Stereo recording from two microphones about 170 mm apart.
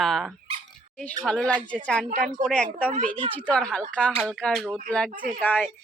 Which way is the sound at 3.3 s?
5° left (ahead or behind).